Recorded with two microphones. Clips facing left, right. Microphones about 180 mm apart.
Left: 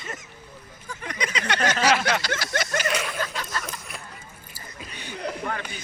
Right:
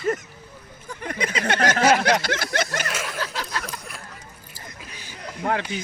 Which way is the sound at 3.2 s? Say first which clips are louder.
Right 1 dB; 90° right.